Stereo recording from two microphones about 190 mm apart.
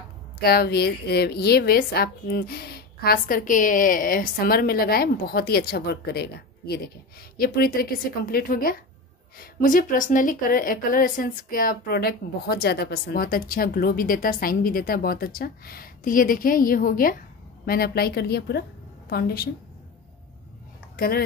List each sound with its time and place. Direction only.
0.4 s a woman's voice: 55° left (ahead or behind)
20.9 s speech: 55° left (ahead or behind)